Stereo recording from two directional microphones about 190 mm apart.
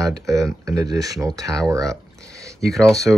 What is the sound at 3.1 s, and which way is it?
Speech, 5° right (ahead or behind).